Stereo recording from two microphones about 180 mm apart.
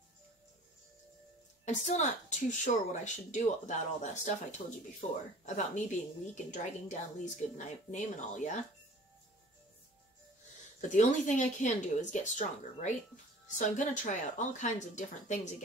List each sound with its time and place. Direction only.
1.7 s a woman's voice: 40° left (ahead or behind)
10.8 s a woman's voice: 40° left (ahead or behind)